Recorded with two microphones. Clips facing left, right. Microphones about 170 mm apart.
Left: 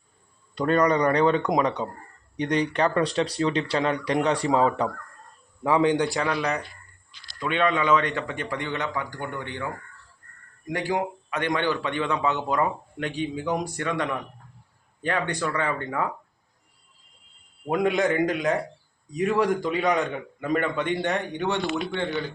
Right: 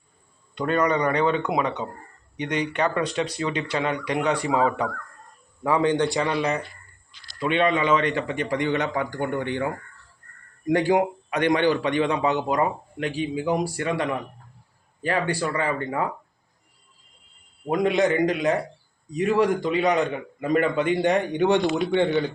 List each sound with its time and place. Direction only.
0.5 s speech: 35° left (ahead or behind)
5.6 s a man's voice: 20° left (ahead or behind)
7.3 s a man's voice: 10° right (ahead or behind)
17.7 s a man's voice: centre (ahead or behind); by 22.0 s 15° right (ahead or behind)